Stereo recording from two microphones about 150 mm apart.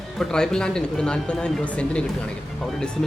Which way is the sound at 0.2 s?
5° left (ahead or behind).